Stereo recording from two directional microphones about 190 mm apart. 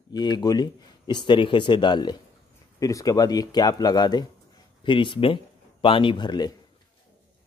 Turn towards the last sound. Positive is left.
turn(degrees=20)  # may be behind; listen again after turning